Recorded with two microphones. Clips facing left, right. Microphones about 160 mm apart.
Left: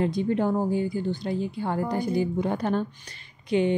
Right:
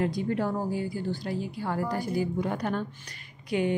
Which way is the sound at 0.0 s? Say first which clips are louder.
Left 3 dB; 25° left (ahead or behind).